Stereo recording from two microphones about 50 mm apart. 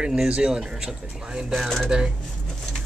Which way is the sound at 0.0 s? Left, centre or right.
Centre.